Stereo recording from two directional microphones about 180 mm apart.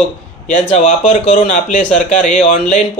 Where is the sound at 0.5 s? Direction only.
45° left (ahead or behind).